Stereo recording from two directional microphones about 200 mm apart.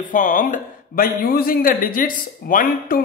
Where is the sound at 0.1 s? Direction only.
40° left (ahead or behind).